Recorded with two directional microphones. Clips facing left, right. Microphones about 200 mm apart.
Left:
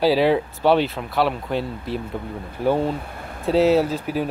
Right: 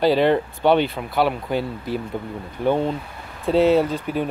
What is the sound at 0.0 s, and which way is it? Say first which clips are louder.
Speech: even; 5° left (ahead or behind).